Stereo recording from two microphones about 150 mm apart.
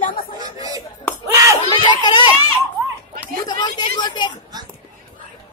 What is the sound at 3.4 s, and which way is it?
Speech, 30° left (ahead or behind).